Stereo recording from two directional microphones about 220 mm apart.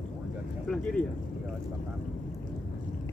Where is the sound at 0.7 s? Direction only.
5° left (ahead or behind).